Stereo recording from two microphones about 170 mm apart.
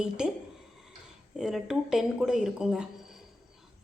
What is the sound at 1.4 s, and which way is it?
A woman's voice, centre (ahead or behind).